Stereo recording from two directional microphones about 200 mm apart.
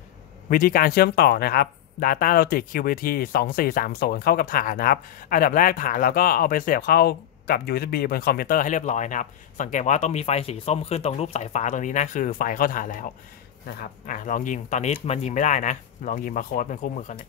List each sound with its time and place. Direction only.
0.5 s speech: 45° left (ahead or behind)